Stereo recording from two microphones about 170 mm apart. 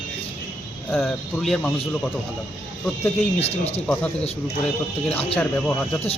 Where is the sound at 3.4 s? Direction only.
35° left (ahead or behind).